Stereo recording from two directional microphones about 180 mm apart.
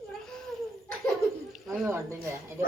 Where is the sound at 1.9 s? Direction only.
15° right (ahead or behind).